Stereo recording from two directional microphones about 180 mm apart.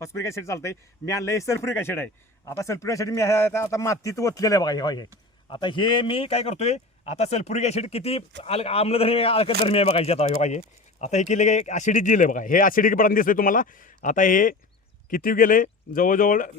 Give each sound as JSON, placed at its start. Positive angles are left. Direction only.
{"t": 0.0, "sound": "a man's voice", "side_deg": 15}